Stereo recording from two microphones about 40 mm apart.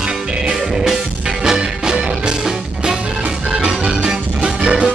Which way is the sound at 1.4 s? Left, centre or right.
Centre.